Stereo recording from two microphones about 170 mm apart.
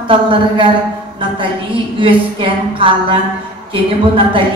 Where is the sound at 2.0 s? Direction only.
30° right (ahead or behind).